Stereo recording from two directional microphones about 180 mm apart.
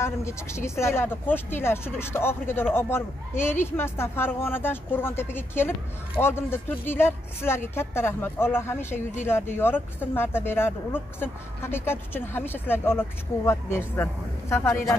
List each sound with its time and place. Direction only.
0.0 s speech: 15° left (ahead or behind)